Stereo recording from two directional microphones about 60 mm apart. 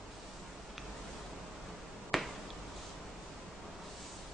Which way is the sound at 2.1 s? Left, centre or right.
Centre.